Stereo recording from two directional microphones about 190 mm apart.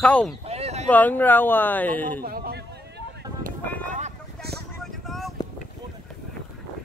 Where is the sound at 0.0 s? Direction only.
5° left (ahead or behind).